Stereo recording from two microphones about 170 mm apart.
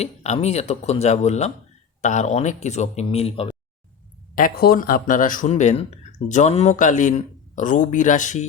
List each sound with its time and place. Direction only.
0.0 s speech: 40° left (ahead or behind)
4.4 s speech: 60° left (ahead or behind); by 8.4 s 45° left (ahead or behind)